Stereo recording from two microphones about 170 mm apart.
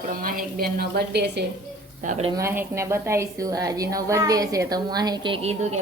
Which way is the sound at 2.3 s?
15° right (ahead or behind).